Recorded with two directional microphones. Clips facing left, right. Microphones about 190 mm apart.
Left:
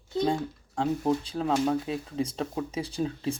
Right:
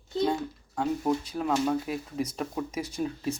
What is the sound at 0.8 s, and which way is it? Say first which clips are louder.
Speech: left 1 dB; 30° left (ahead or behind).